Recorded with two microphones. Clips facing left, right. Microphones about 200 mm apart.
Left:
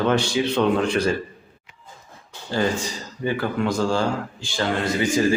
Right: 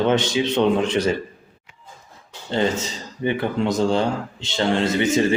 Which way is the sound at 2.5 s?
25° right (ahead or behind).